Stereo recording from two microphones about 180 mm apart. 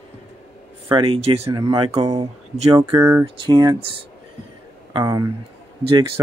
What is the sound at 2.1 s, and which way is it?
Speech, 35° right (ahead or behind).